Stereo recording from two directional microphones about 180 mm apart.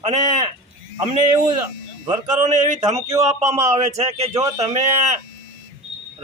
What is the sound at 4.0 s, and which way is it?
Speech, 35° right (ahead or behind).